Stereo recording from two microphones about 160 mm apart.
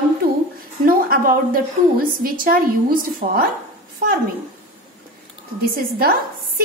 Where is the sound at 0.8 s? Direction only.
65° right (ahead or behind).